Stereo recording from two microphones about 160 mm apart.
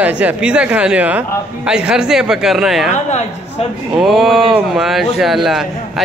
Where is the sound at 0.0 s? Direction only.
10° right (ahead or behind).